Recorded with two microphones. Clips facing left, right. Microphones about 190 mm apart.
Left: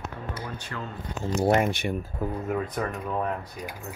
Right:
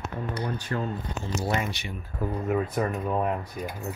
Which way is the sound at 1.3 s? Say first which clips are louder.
Left 7 dB; 55° left (ahead or behind).